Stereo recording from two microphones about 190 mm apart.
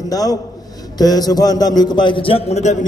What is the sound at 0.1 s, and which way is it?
A man's voice, 20° left (ahead or behind).